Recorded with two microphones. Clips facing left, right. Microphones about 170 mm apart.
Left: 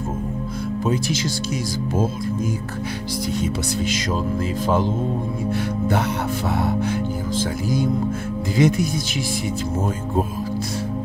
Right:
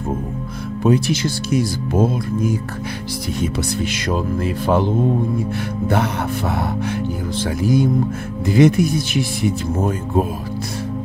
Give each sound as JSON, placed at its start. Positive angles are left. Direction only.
{"t": 0.8, "sound": "speech", "side_deg": -60}
{"t": 8.5, "sound": "speech", "side_deg": -60}